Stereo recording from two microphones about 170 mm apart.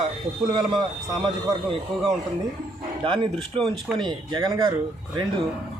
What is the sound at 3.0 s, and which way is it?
Speech, 30° right (ahead or behind).